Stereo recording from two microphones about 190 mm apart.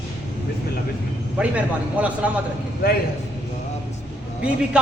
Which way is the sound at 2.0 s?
5° right (ahead or behind).